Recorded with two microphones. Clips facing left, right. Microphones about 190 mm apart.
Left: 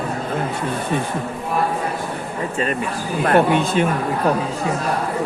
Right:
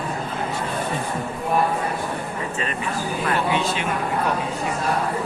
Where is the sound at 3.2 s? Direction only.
50° left (ahead or behind).